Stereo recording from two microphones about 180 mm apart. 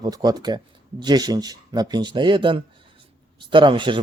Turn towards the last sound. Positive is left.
turn(degrees=-25)  # may be behind; listen again after turning